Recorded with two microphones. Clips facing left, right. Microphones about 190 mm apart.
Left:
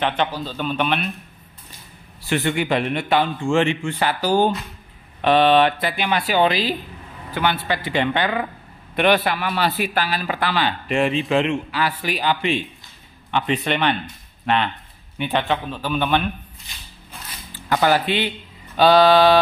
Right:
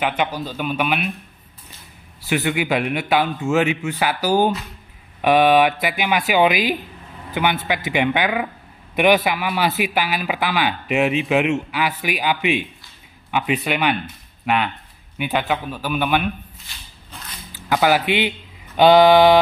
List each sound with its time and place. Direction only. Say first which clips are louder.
0.0 s a man's voice: even; 10° right (ahead or behind)
2.2 s a man's voice: even; 5° right (ahead or behind)
16.7 s a sound: left 3 dB; 20° left (ahead or behind)
17.8 s a man's voice: right 1 dB; 10° right (ahead or behind)